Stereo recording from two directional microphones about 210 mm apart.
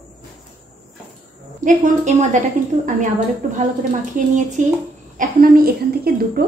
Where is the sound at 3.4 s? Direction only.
35° right (ahead or behind).